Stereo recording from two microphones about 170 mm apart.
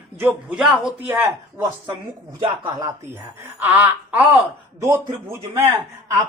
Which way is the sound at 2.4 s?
25° right (ahead or behind).